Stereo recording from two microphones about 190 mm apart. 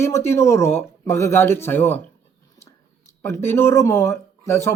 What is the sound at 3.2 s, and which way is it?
Speech, 15° left (ahead or behind).